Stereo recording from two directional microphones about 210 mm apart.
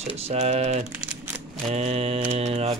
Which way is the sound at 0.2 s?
30° right (ahead or behind).